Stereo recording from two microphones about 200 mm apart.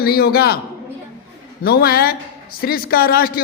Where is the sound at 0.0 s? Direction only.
50° left (ahead or behind).